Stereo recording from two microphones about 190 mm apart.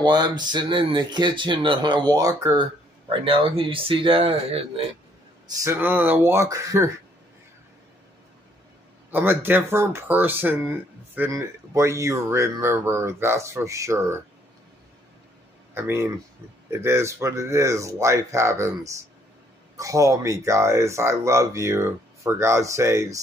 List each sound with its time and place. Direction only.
0.0 s speech: 20° right (ahead or behind)
5.5 s speech: 15° right (ahead or behind)
9.1 s speech: 10° right (ahead or behind)
15.7 s speech: 15° right (ahead or behind)